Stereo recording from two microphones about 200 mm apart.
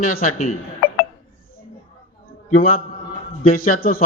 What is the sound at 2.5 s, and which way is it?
A man's voice, 45° left (ahead or behind).